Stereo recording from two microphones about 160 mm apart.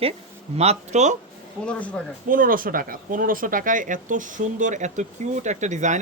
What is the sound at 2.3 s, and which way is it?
Speech, 60° right (ahead or behind).